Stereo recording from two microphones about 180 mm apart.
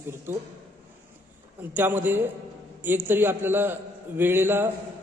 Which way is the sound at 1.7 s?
10° right (ahead or behind).